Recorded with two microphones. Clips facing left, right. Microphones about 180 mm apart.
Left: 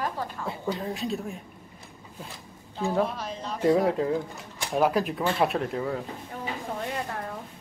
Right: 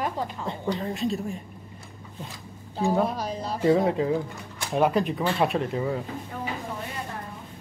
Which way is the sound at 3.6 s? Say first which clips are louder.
Right 1 dB; centre (ahead or behind).